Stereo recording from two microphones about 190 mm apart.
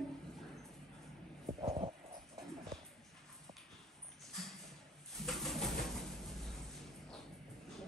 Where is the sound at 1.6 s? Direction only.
30° right (ahead or behind).